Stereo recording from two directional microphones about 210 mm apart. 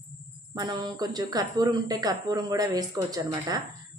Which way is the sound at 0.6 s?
20° right (ahead or behind).